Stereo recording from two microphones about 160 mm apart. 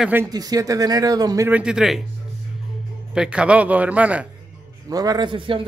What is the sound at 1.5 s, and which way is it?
Speech, 5° right (ahead or behind).